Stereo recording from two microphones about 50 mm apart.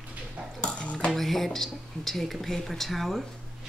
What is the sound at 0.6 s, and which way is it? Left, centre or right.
Dishes, left.